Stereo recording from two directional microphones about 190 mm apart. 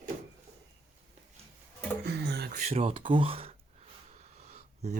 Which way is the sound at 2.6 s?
35° right (ahead or behind).